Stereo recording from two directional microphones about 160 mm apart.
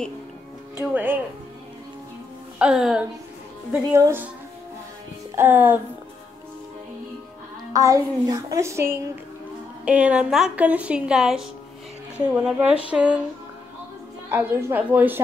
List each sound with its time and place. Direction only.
0.7 s a woman's voice: 10° right (ahead or behind)
2.6 s speech: 5° right (ahead or behind)
3.9 s a woman's voice: 15° right (ahead or behind)
5.3 s music: 15° right (ahead or behind)
7.7 s a woman's voice: 20° right (ahead or behind); by 11.4 s 5° right (ahead or behind)
12.4 s a woman's voice: 10° right (ahead or behind)
14.3 s a woman's voice: 15° right (ahead or behind)